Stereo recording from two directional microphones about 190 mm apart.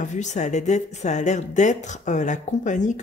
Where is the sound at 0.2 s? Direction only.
40° left (ahead or behind).